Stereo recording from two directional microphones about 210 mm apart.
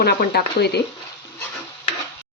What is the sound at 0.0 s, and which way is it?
Speech, 50° left (ahead or behind).